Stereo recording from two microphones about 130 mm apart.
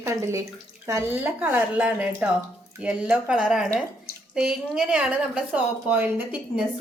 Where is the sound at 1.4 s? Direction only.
10° right (ahead or behind).